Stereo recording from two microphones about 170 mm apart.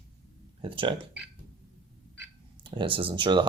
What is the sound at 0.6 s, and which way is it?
Speech, 30° right (ahead or behind).